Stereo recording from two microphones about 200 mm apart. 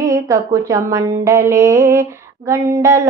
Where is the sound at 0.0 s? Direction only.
15° right (ahead or behind).